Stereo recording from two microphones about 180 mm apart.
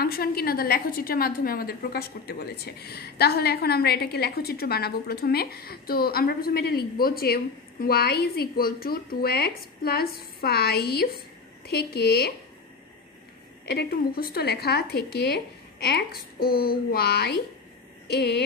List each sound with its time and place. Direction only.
0.0 s a woman's voice: 55° left (ahead or behind)
13.7 s a woman's voice: 60° left (ahead or behind)